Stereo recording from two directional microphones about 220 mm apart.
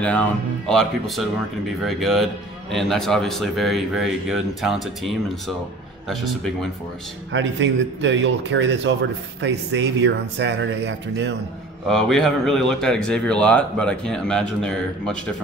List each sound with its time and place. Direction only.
0.7 s speech: centre (ahead or behind)
7.3 s speech: 55° right (ahead or behind)
11.9 s speech: centre (ahead or behind)